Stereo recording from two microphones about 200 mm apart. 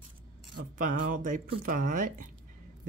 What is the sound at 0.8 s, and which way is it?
Speech, 40° right (ahead or behind).